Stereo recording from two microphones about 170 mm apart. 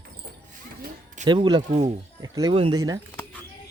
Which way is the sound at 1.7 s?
40° right (ahead or behind).